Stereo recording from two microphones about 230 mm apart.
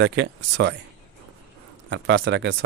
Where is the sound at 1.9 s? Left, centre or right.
Right.